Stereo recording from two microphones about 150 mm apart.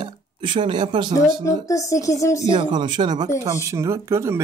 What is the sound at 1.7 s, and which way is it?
Speech, 20° left (ahead or behind).